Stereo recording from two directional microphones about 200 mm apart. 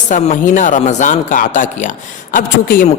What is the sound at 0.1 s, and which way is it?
Speech, 40° left (ahead or behind).